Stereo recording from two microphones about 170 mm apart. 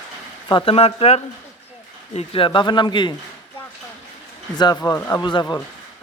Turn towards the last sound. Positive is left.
turn(degrees=25)  # may be behind; listen again after turning